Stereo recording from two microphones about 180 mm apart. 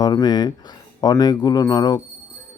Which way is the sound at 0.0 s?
25° left (ahead or behind).